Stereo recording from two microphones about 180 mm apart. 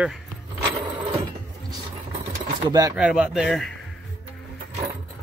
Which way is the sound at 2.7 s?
20° right (ahead or behind).